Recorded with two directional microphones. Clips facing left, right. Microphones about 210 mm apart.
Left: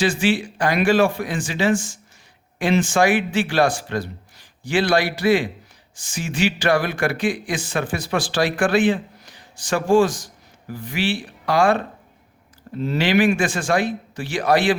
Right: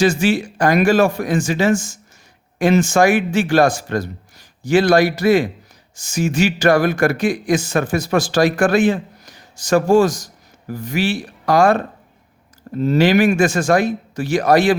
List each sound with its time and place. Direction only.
0.0 s speech: 45° right (ahead or behind)